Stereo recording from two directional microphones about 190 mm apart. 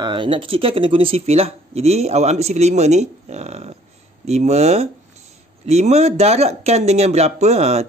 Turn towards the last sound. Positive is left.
turn(degrees=-35)  # may be behind; listen again after turning